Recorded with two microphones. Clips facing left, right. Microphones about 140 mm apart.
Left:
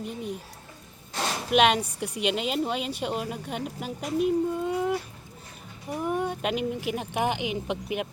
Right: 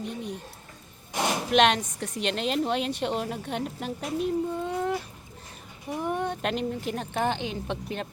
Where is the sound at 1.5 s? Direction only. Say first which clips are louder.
Left 1 dB; 5° left (ahead or behind).